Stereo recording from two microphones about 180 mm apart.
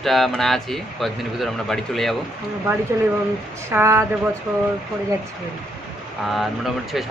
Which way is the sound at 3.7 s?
15° right (ahead or behind).